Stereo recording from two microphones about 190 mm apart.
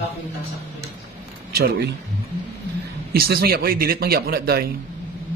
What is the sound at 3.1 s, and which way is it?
A man's voice, 50° right (ahead or behind).